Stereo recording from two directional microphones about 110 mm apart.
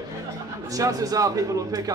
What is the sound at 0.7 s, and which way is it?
Speech, 30° right (ahead or behind).